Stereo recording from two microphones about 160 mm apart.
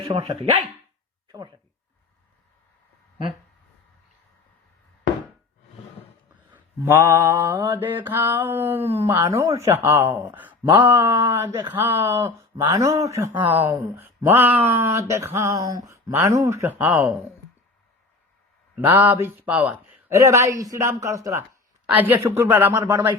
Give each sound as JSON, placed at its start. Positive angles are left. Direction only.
{"t": 0.0, "sound": "speech", "side_deg": -35}
{"t": 6.5, "sound": "speech", "side_deg": -15}
{"t": 18.8, "sound": "speech", "side_deg": -10}